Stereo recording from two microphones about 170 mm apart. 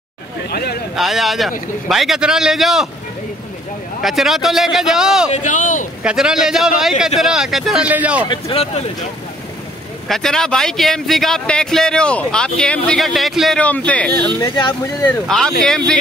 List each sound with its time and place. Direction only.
0.5 s speech: 65° left (ahead or behind)
0.9 s a man's voice: centre (ahead or behind)
4.0 s a man's voice: centre (ahead or behind)
5.3 s speech: 50° left (ahead or behind)
6.0 s a man's voice: 5° right (ahead or behind)
8.3 s speech: 35° left (ahead or behind)
10.0 s a man's voice: centre (ahead or behind)
14.4 s speech: 25° left (ahead or behind)
14.7 s a man's voice: 15° left (ahead or behind)